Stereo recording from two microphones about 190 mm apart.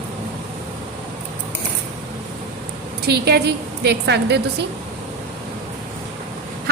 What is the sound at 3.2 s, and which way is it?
A woman's voice, 60° right (ahead or behind).